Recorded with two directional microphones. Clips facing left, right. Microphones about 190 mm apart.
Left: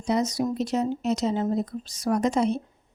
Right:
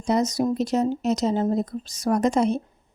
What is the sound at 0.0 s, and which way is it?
Speech, 45° right (ahead or behind).